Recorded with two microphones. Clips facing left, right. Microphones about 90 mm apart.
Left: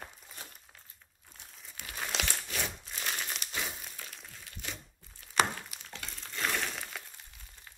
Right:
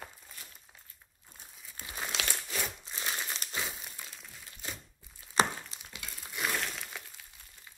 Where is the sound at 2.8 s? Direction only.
25° right (ahead or behind).